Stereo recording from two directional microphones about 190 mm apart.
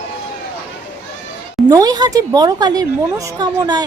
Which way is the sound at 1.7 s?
20° right (ahead or behind).